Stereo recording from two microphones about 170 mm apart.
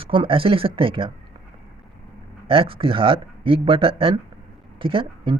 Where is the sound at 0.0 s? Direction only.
30° right (ahead or behind).